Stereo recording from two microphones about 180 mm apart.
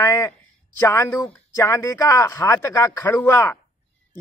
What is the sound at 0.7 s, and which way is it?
A man's voice, 15° left (ahead or behind).